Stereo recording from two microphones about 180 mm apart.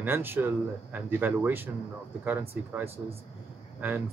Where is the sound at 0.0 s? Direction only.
10° right (ahead or behind).